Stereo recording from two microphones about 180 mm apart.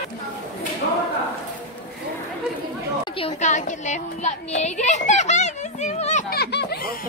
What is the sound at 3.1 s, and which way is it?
Speech, 30° left (ahead or behind).